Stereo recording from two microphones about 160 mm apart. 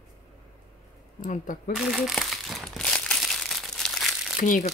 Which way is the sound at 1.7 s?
Centre (ahead or behind).